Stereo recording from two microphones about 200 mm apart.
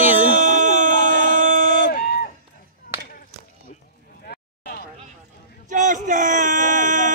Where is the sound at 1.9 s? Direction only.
55° left (ahead or behind).